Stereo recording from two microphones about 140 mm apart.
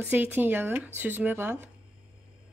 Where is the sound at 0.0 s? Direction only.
10° right (ahead or behind).